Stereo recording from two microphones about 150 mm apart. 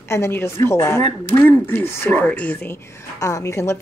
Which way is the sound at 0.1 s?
15° left (ahead or behind).